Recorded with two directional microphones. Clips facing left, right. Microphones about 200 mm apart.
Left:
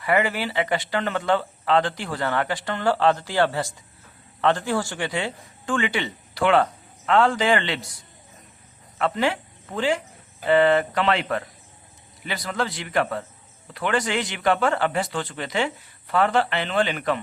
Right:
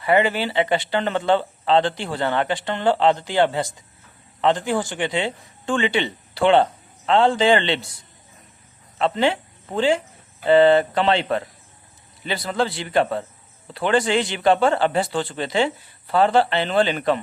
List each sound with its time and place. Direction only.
0.0 s speech: 25° right (ahead or behind)
9.0 s a man's voice: 25° right (ahead or behind)